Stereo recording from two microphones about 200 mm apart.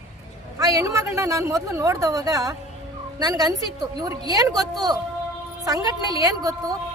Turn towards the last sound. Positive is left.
turn(degrees=-20)  # may be behind; listen again after turning